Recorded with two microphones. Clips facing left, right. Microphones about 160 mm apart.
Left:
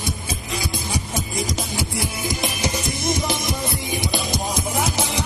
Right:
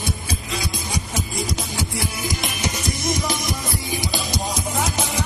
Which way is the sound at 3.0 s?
25° left (ahead or behind).